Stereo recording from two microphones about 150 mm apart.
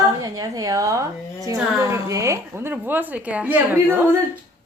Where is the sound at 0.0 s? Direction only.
20° right (ahead or behind).